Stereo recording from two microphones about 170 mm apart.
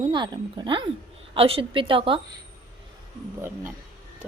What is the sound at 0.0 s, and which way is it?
A woman's voice, 30° right (ahead or behind).